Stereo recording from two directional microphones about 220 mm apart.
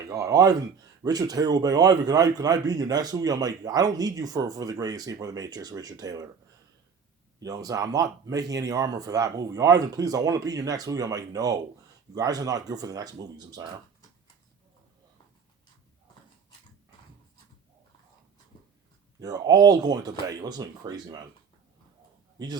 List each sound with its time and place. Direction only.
0.1 s a man's voice: 15° right (ahead or behind)
7.3 s a man's voice: 15° right (ahead or behind)
19.2 s a man's voice: 15° right (ahead or behind)